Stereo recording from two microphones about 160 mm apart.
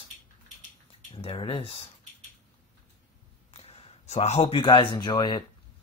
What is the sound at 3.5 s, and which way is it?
A man's voice, 40° left (ahead or behind).